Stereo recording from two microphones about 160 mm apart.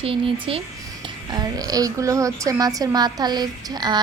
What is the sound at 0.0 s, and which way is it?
Speech, 35° right (ahead or behind).